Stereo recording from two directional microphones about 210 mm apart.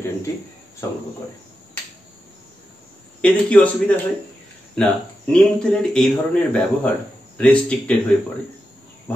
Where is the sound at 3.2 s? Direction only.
5° left (ahead or behind).